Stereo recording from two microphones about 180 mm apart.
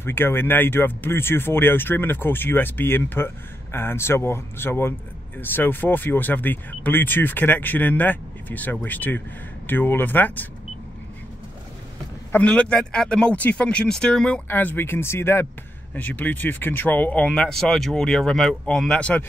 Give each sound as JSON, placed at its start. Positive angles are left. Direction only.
{"t": 0.0, "sound": "speech", "side_deg": 15}
{"t": 12.3, "sound": "a man's voice", "side_deg": 10}